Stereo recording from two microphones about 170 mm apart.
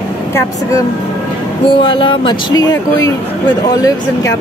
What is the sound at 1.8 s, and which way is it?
Speech, 30° left (ahead or behind).